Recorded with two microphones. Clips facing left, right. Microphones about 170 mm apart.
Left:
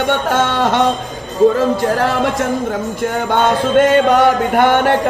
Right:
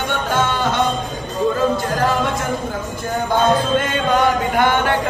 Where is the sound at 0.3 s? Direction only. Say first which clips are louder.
Left 4 dB; 85° left.